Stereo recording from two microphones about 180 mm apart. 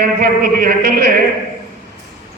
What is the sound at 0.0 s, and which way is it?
A man's voice, 55° right (ahead or behind).